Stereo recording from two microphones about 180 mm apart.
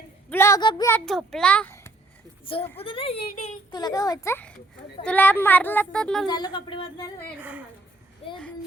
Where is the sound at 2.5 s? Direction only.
30° left (ahead or behind); by 6.2 s 5° left (ahead or behind).